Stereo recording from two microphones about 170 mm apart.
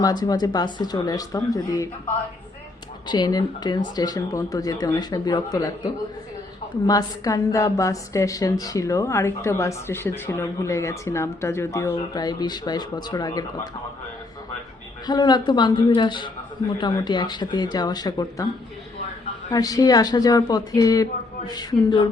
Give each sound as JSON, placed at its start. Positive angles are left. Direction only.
{"t": 0.0, "sound": "a woman's voice", "side_deg": 25}
{"t": 3.1, "sound": "a woman's voice", "side_deg": 25}
{"t": 15.0, "sound": "a woman's voice", "side_deg": 25}
{"t": 19.5, "sound": "a woman's voice", "side_deg": 20}